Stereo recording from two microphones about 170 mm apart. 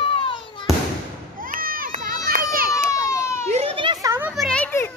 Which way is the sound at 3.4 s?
40° right (ahead or behind).